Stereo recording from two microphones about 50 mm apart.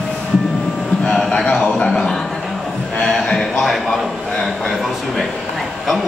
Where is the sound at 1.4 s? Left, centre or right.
Left.